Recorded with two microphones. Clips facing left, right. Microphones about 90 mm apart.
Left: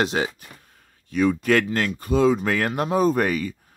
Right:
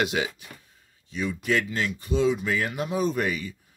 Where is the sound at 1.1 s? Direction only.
60° left (ahead or behind).